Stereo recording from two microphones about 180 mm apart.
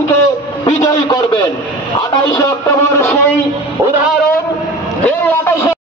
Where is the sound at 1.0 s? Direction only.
25° left (ahead or behind).